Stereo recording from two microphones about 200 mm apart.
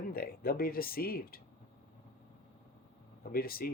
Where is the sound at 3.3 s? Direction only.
50° left (ahead or behind).